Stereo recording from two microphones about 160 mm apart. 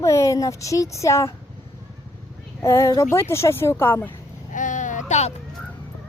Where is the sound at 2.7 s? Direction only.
20° left (ahead or behind).